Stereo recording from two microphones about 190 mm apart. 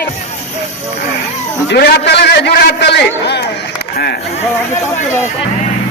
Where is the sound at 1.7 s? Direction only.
60° left (ahead or behind).